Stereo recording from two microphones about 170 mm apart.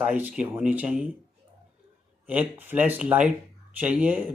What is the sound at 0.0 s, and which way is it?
Speech, 10° right (ahead or behind).